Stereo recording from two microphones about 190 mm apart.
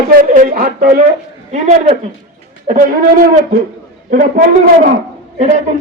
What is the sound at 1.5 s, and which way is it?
A man's voice, 35° right (ahead or behind).